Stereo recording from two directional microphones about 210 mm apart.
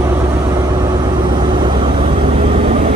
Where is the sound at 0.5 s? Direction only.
20° right (ahead or behind).